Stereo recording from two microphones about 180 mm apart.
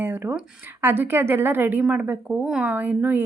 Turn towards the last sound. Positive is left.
turn(degrees=-10)  # may be behind; listen again after turning